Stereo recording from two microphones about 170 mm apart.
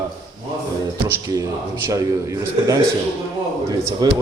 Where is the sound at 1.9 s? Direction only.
20° right (ahead or behind).